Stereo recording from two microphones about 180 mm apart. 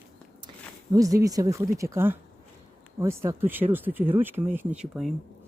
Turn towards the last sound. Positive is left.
turn(degrees=-5)  # may be behind; listen again after turning